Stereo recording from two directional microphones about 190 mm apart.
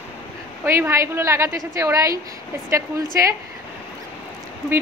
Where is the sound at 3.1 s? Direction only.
15° right (ahead or behind).